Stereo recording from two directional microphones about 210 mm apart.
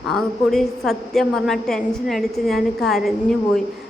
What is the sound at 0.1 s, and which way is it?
A woman's voice, centre (ahead or behind).